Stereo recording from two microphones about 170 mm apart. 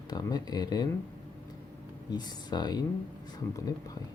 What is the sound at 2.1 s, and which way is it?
Speech, 25° left (ahead or behind).